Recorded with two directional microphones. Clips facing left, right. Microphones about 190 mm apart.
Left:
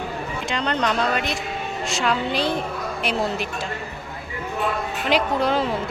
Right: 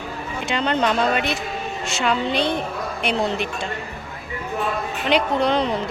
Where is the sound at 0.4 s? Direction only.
5° right (ahead or behind).